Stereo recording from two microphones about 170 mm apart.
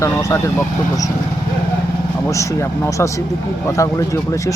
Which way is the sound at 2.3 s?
15° left (ahead or behind).